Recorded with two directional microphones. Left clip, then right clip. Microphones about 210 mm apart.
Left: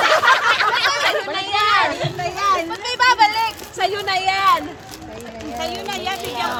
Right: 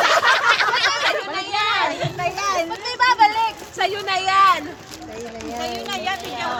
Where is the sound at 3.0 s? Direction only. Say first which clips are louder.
Left 1 dB; 20° left (ahead or behind).